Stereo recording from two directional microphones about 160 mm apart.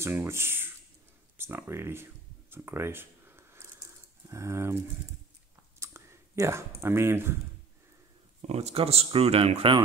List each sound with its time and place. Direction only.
0.0 s speech: 15° right (ahead or behind)
2.5 s a sound: 15° right (ahead or behind)
5.8 s speech: 20° right (ahead or behind)
8.4 s speech: 40° right (ahead or behind)